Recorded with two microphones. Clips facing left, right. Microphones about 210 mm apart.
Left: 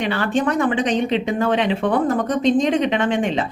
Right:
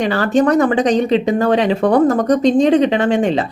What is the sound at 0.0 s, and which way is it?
Speech, 40° right (ahead or behind).